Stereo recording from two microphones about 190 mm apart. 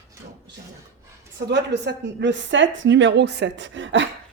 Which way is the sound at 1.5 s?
65° right (ahead or behind).